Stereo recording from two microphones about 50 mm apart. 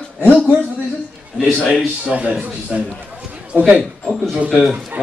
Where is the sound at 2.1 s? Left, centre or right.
Right.